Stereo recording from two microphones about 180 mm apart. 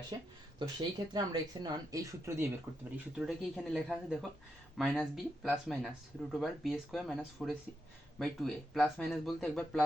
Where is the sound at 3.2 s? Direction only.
5° right (ahead or behind).